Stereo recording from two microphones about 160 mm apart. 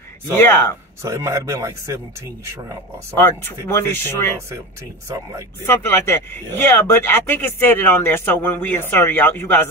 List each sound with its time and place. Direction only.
0.3 s speech: 15° left (ahead or behind)
1.0 s speech: 20° right (ahead or behind)
3.2 s speech: 15° left (ahead or behind)
5.7 s speech: 15° left (ahead or behind)